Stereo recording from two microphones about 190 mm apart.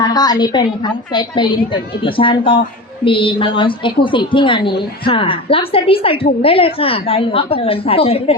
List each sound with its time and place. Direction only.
0.0 s a woman's voice: 20° left (ahead or behind)